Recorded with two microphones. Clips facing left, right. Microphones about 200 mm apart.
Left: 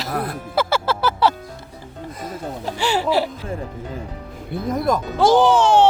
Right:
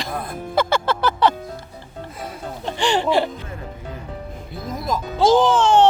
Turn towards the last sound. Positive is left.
turn(degrees=10)  # may be behind; listen again after turning